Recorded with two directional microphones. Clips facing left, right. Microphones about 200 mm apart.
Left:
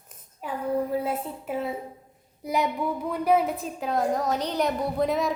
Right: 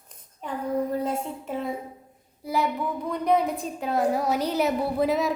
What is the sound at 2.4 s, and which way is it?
Speech, 20° left (ahead or behind).